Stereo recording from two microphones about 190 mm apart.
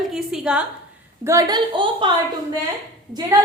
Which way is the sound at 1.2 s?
15° right (ahead or behind).